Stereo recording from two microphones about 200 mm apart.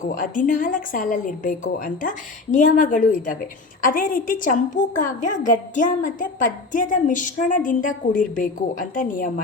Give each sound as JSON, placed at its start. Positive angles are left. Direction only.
{"t": 0.0, "sound": "a woman's voice", "side_deg": 40}